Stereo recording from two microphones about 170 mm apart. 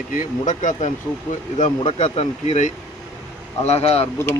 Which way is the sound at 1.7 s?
35° left (ahead or behind).